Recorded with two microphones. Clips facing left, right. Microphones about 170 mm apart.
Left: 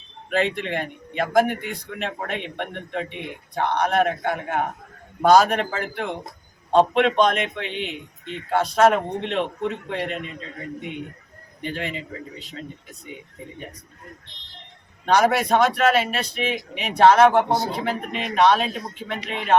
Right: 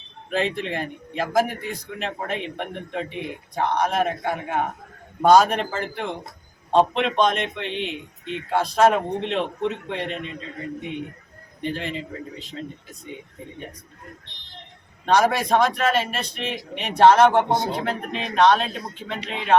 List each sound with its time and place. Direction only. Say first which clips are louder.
0.3 s speech: left 1 dB; centre (ahead or behind)
11.6 s speech: right 1 dB; centre (ahead or behind)
15.0 s speech: left 1 dB; centre (ahead or behind)